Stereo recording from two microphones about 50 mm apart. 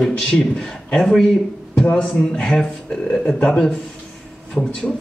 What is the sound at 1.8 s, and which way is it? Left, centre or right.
Speech, left.